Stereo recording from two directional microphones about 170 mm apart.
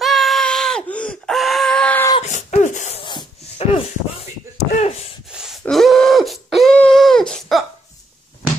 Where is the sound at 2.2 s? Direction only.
45° left (ahead or behind).